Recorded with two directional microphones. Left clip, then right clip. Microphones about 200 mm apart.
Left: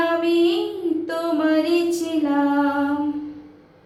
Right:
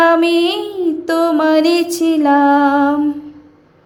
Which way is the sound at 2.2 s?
50° right (ahead or behind).